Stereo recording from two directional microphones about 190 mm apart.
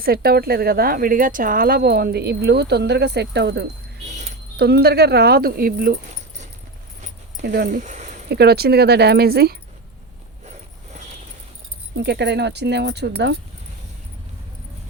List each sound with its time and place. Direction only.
0.0 s speech: 50° right (ahead or behind)
4.0 s a sound: 40° right (ahead or behind)
4.5 s speech: 60° right (ahead or behind)
7.4 s speech: 60° right (ahead or behind)
7.7 s a sound: 40° right (ahead or behind)
8.3 s speech: 55° right (ahead or behind)
11.9 s speech: 65° right (ahead or behind)